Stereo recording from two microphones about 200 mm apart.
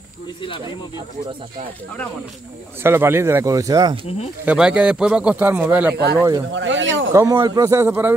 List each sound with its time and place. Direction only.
2.8 s speech: 10° right (ahead or behind)
4.5 s speech: 5° right (ahead or behind)
6.5 s speech: 70° right (ahead or behind)
7.1 s speech: 15° right (ahead or behind)